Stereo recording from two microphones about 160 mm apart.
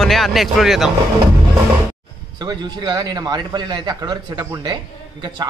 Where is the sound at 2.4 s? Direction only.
25° right (ahead or behind).